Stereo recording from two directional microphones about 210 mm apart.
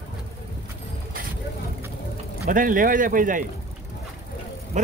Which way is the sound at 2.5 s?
40° right (ahead or behind).